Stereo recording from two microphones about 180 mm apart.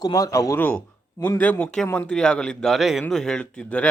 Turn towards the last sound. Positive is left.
turn(degrees=5)  # may be behind; listen again after turning